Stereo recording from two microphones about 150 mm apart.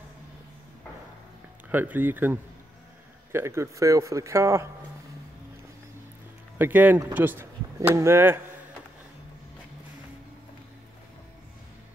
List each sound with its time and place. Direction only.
1.7 s speech: 10° right (ahead or behind)
6.6 s speech: 10° right (ahead or behind)